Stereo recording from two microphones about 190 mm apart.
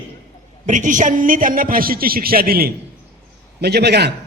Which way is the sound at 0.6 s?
40° right (ahead or behind).